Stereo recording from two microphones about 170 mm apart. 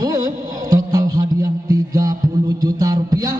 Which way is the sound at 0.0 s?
20° right (ahead or behind).